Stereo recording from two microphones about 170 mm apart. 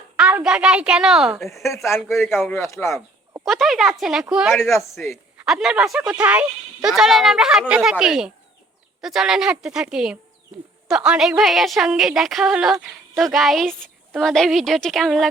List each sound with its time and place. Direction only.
0.2 s a woman's voice: 5° right (ahead or behind)
1.6 s speech: 15° left (ahead or behind)
3.4 s a woman's voice: centre (ahead or behind)